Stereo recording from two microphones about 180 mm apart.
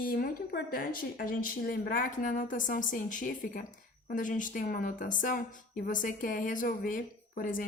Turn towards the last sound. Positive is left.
turn(degrees=50)  # may be behind; listen again after turning